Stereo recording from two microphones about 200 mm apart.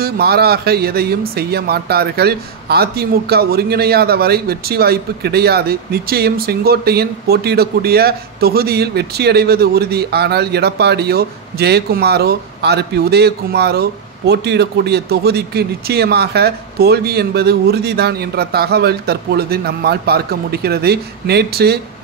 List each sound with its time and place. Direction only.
0.0 s speech: 50° right (ahead or behind)